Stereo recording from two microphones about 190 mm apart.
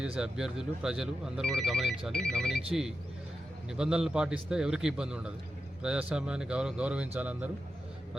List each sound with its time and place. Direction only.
0.0 s speech: 5° right (ahead or behind)